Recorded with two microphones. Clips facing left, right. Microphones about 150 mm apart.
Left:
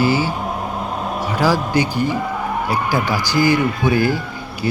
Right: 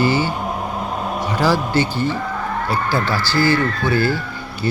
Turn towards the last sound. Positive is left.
turn(degrees=15)  # may be behind; listen again after turning